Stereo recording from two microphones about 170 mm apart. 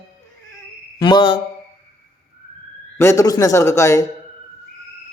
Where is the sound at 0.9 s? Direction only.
25° left (ahead or behind).